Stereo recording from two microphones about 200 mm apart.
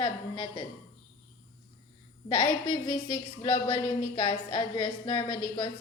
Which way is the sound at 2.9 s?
20° left (ahead or behind).